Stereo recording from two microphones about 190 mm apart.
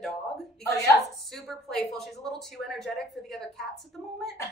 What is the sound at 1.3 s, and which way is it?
A woman's voice, centre (ahead or behind).